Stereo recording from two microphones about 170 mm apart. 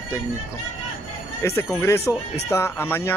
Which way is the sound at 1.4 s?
15° left (ahead or behind).